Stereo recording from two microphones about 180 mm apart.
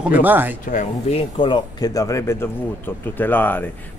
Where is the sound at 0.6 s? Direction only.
40° left (ahead or behind).